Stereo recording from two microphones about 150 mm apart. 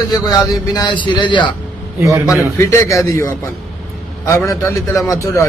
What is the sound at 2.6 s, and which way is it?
A man's voice, 20° left (ahead or behind).